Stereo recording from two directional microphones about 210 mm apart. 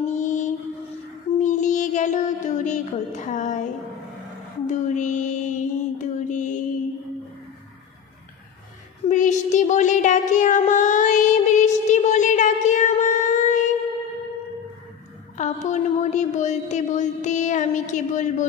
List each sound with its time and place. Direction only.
0.2 s mantra: 35° left (ahead or behind)
1.4 s child singing: 35° left (ahead or behind)
4.6 s child singing: 35° left (ahead or behind)
9.0 s child singing: 35° left (ahead or behind)
15.3 s a sound: 35° left (ahead or behind)